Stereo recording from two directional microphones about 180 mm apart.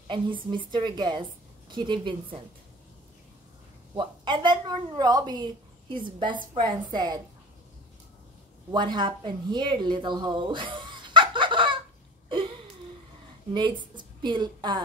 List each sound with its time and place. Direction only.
0.7 s a woman's voice: 25° right (ahead or behind)
3.9 s a woman's voice: 25° right (ahead or behind)
8.7 s speech: 25° right (ahead or behind)
13.5 s a woman's voice: 25° right (ahead or behind)